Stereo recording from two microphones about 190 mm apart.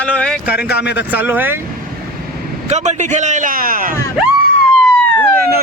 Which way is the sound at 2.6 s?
35° right (ahead or behind).